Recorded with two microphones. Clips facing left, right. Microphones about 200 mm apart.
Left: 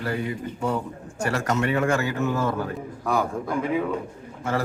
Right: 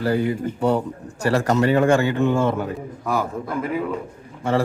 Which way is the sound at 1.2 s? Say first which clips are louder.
Right 6 dB; 35° right (ahead or behind).